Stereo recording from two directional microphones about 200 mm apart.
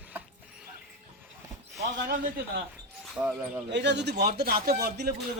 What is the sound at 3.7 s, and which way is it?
A man's voice, 60° right (ahead or behind).